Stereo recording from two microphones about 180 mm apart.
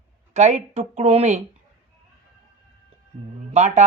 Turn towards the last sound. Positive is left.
turn(degrees=-40)  # may be behind; listen again after turning